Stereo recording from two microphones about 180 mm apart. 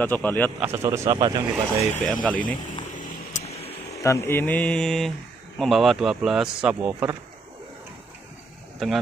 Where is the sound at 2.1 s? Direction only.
5° left (ahead or behind).